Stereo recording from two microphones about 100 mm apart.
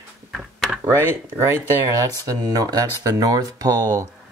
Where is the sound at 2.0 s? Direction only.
35° right (ahead or behind).